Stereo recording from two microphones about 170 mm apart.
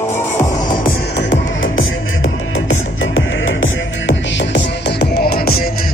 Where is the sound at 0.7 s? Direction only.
65° left (ahead or behind); by 1.6 s 90° left.